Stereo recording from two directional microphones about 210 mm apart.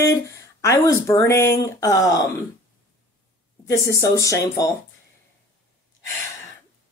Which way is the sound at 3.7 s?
15° left (ahead or behind).